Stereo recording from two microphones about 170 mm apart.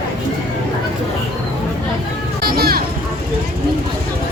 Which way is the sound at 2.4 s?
65° right (ahead or behind).